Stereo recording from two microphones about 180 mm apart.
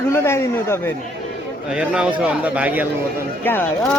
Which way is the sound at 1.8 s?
5° right (ahead or behind).